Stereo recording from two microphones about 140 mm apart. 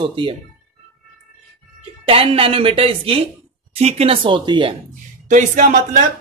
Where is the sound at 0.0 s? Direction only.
40° right (ahead or behind).